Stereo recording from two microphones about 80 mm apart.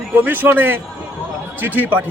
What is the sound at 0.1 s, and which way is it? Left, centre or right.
Speech, right.